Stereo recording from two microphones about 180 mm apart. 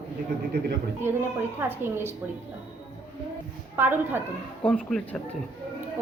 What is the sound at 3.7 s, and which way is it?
Speech, 10° right (ahead or behind).